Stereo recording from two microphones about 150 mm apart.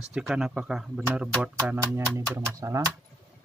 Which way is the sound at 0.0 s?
5° right (ahead or behind).